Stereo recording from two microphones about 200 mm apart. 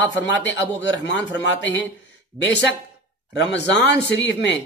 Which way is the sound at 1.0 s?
60° left (ahead or behind).